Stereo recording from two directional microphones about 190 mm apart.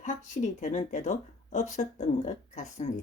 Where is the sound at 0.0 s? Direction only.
40° left (ahead or behind).